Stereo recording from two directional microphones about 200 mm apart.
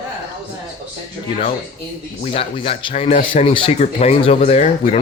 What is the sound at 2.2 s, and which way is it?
Speech, 30° left (ahead or behind).